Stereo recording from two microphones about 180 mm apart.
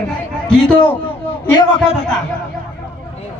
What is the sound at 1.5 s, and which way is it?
Speech, 30° left (ahead or behind).